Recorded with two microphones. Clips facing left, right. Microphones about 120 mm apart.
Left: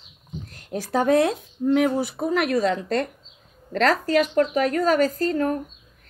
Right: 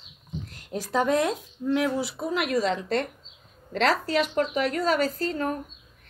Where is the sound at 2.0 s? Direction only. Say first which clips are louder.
Left 5 dB; 50° left (ahead or behind).